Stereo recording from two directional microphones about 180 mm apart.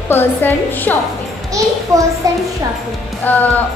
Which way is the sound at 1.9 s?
15° right (ahead or behind).